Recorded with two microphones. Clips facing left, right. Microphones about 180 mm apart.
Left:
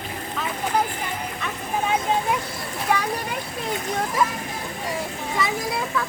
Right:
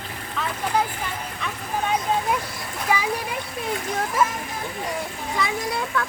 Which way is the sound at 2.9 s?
5° right (ahead or behind).